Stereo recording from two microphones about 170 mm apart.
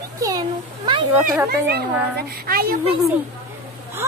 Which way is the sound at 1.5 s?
70° right (ahead or behind).